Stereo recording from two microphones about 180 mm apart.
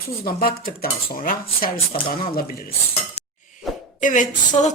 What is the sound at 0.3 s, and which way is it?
Speech, 55° left (ahead or behind).